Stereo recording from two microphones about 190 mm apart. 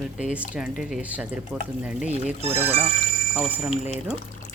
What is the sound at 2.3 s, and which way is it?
Speech, 35° right (ahead or behind).